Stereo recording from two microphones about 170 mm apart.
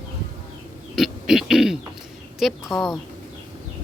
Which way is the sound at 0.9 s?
Centre (ahead or behind).